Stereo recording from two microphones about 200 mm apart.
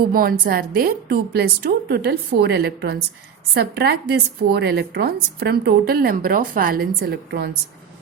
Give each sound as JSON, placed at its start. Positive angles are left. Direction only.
{"t": 0.1, "sound": "a woman's voice", "side_deg": -45}